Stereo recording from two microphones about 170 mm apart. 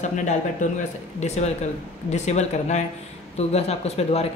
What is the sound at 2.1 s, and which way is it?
Speech, 40° left (ahead or behind).